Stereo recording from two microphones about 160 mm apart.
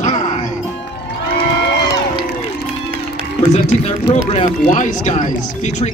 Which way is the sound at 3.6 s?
45° left (ahead or behind).